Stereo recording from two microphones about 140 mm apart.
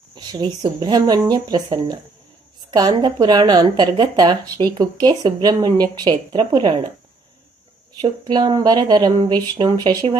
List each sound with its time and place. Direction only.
0.1 s speech: 30° right (ahead or behind)
8.0 s speech: 30° right (ahead or behind)